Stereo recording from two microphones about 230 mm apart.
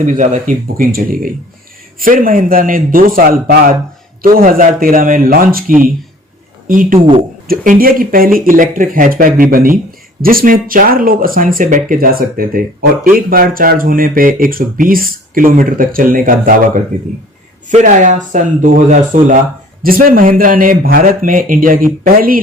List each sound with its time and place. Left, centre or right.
0.0 s speech: right